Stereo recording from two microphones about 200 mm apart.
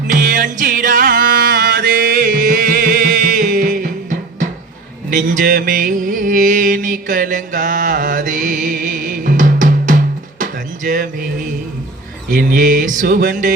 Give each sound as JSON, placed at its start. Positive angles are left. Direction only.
{"t": 0.1, "sound": "music", "side_deg": -40}
{"t": 1.2, "sound": "music", "side_deg": -55}
{"t": 5.1, "sound": "music", "side_deg": -40}
{"t": 12.3, "sound": "music", "side_deg": -45}